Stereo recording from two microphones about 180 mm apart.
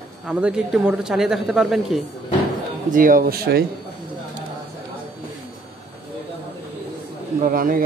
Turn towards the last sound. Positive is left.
turn(degrees=-50)  # may be behind; listen again after turning